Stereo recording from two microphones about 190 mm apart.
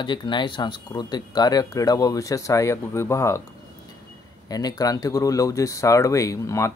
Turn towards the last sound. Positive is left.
turn(degrees=15)  # may be behind; listen again after turning